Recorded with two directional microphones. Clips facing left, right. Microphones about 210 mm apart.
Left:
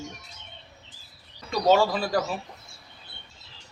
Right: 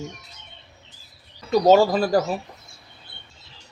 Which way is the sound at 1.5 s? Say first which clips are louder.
Right 6 dB; 40° right (ahead or behind).